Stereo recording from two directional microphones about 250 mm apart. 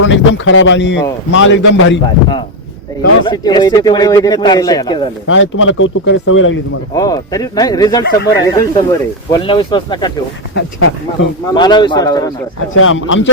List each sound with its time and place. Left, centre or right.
0.0 s speech: left
3.2 s speech: centre
5.3 s speech: left
6.9 s speech: centre
10.5 s speech: left
11.5 s speech: centre
12.8 s speech: left